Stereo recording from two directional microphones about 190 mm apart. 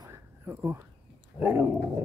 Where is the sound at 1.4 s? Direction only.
10° right (ahead or behind).